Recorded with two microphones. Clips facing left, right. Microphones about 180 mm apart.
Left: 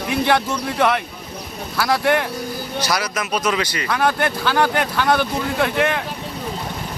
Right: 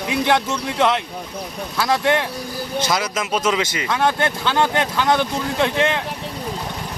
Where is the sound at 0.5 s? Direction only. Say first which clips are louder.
Even; 25° right (ahead or behind).